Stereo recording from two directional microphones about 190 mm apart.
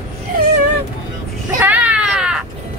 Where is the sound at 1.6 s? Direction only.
10° right (ahead or behind).